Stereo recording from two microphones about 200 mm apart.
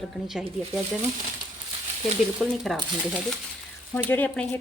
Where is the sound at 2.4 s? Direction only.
Centre (ahead or behind).